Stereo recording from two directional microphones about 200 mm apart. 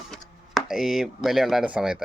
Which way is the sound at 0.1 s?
Centre (ahead or behind).